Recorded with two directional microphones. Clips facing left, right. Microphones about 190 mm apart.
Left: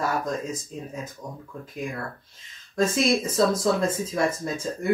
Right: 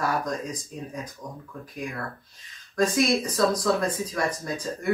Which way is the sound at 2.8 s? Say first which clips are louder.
Even; 25° left (ahead or behind).